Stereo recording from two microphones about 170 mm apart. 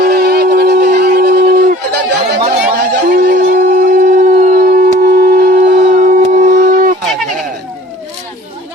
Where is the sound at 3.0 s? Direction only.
55° right (ahead or behind).